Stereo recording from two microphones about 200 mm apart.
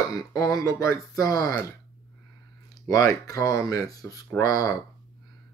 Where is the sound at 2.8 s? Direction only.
15° left (ahead or behind).